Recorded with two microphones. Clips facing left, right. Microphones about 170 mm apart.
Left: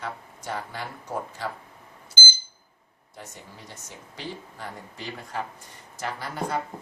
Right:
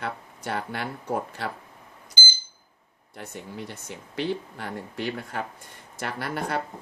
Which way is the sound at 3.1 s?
65° right (ahead or behind).